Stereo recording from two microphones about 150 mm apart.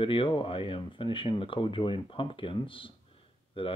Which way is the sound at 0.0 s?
35° left (ahead or behind).